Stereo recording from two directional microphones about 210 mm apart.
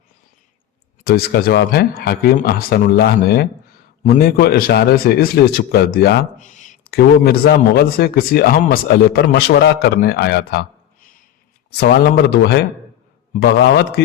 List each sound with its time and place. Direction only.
1.0 s a man's voice: 45° left (ahead or behind)